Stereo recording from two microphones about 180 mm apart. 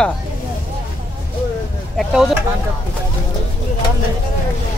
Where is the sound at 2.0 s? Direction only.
Centre (ahead or behind).